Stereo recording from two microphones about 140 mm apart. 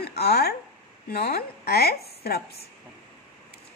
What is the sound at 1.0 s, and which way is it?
Speech, 90° left.